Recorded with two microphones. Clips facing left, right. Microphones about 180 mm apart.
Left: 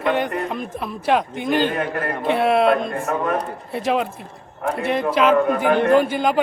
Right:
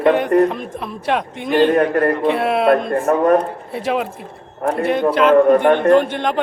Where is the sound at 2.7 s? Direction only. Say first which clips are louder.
Right 5 dB; 50° right (ahead or behind).